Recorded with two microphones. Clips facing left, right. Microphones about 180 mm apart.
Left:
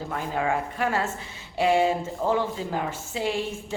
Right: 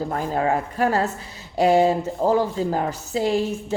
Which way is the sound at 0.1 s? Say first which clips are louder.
Right 2 dB; 40° right (ahead or behind).